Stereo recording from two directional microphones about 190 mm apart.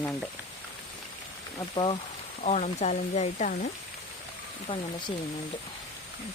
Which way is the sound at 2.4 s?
35° left (ahead or behind).